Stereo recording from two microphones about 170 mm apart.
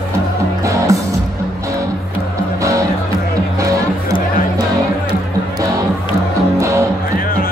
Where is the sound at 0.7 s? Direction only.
20° right (ahead or behind).